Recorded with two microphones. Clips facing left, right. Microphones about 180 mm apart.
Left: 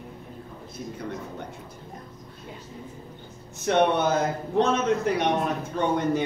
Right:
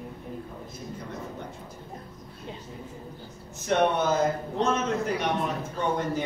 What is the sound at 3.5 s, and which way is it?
Speech, 65° left (ahead or behind).